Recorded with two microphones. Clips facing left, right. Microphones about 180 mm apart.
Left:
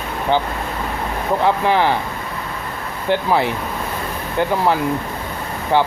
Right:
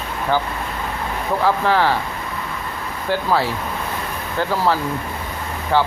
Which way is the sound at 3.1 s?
20° left (ahead or behind).